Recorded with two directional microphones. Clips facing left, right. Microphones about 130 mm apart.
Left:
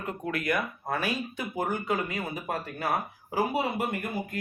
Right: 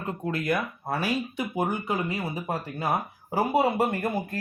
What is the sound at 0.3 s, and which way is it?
Speech, 30° right (ahead or behind).